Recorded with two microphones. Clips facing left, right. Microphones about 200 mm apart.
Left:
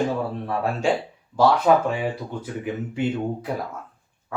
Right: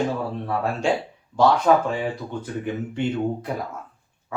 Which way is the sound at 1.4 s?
10° left (ahead or behind).